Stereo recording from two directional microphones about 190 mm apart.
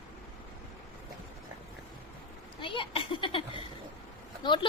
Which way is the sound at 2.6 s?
25° left (ahead or behind).